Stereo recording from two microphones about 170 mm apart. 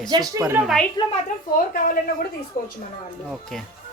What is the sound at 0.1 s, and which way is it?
Speech, 20° right (ahead or behind).